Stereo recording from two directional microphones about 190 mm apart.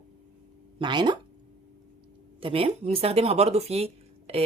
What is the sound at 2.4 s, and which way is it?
Speech, 30° right (ahead or behind).